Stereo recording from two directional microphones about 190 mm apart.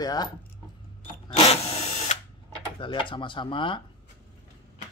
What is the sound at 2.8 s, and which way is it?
Speech, 25° left (ahead or behind).